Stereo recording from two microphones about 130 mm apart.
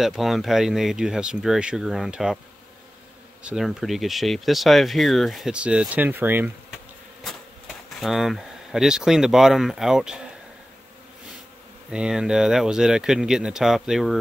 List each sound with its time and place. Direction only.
0.0 s speech: centre (ahead or behind)
3.4 s speech: centre (ahead or behind)
7.2 s speech: centre (ahead or behind)
11.9 s speech: 5° right (ahead or behind)